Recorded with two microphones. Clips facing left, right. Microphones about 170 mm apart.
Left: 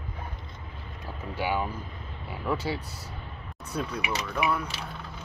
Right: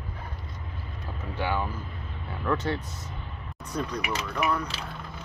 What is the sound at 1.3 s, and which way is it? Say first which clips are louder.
Speech: even; 15° left (ahead or behind).